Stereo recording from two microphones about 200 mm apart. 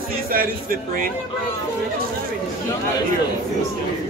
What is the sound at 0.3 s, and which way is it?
Speech, 45° right (ahead or behind).